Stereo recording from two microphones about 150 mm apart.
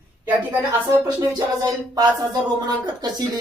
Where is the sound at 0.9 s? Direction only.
25° right (ahead or behind).